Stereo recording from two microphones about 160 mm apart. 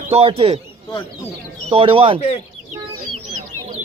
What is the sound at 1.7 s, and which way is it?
Speech, 35° right (ahead or behind).